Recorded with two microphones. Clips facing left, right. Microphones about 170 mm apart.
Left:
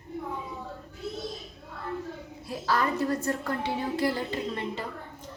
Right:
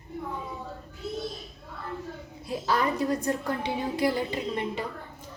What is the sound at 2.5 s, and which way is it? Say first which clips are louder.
A woman's voice: right 1 dB; 20° right (ahead or behind).